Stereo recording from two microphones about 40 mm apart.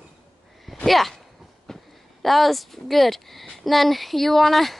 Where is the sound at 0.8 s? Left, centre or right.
Centre.